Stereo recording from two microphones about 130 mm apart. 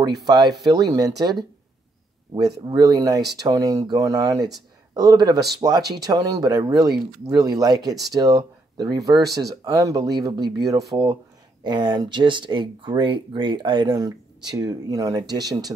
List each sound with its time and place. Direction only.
0.3 s speech: 30° right (ahead or behind)